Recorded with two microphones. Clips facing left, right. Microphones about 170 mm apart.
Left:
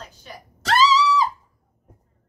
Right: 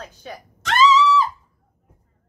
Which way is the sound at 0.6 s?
35° left (ahead or behind).